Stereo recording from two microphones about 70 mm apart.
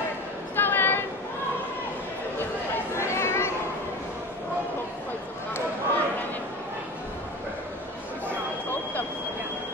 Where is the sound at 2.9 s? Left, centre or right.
Left.